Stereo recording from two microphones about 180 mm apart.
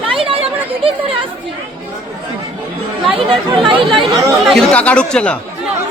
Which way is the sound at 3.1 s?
30° right (ahead or behind).